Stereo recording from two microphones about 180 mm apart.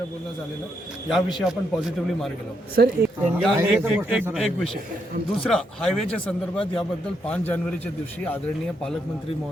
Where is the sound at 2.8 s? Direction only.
60° right (ahead or behind).